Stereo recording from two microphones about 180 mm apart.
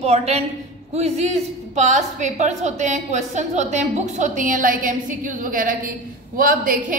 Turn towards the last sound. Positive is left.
turn(degrees=-50)  # may be behind; listen again after turning